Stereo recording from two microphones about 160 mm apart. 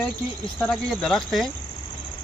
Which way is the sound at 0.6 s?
5° left (ahead or behind).